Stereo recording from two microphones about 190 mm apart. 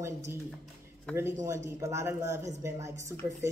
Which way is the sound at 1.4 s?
15° right (ahead or behind).